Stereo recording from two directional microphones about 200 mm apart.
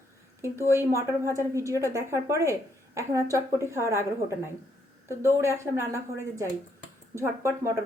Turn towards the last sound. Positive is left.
turn(degrees=-15)  # may be behind; listen again after turning